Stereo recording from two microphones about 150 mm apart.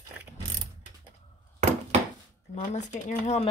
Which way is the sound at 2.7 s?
50° left (ahead or behind).